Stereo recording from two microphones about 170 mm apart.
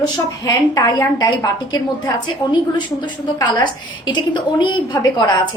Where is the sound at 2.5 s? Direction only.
25° left (ahead or behind).